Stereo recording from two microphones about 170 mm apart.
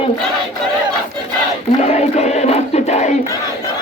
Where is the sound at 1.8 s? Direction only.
40° left (ahead or behind).